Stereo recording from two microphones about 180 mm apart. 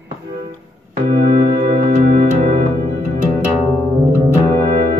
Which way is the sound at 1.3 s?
45° right (ahead or behind).